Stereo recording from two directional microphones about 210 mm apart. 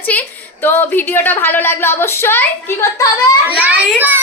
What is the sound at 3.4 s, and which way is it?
Speech, 5° right (ahead or behind).